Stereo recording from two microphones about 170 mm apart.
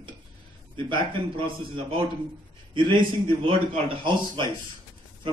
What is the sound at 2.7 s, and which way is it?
A man's voice, 30° right (ahead or behind).